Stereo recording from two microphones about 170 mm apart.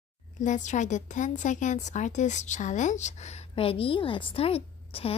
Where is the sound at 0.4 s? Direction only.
45° left (ahead or behind).